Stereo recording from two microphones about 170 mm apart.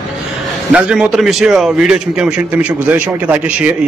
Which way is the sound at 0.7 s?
5° right (ahead or behind).